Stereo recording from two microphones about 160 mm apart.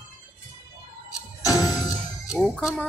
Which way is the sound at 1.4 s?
20° left (ahead or behind).